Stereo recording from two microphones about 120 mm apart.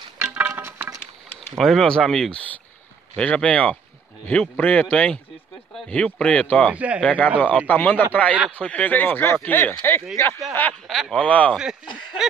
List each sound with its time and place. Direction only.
0.2 s music: 20° right (ahead or behind)
1.6 s speech: 5° left (ahead or behind)
6.7 s speech: 10° right (ahead or behind)
7.0 s speech: 10° left (ahead or behind)
10.9 s speech: centre (ahead or behind)